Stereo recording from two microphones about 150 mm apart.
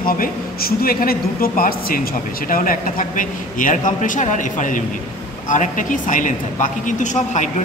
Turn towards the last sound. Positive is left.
turn(degrees=55)  # may be behind; listen again after turning